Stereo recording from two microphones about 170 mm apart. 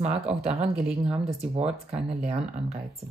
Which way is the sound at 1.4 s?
40° right (ahead or behind).